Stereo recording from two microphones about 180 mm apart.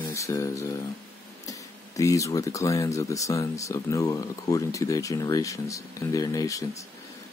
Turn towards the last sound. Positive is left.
turn(degrees=20)  # may be behind; listen again after turning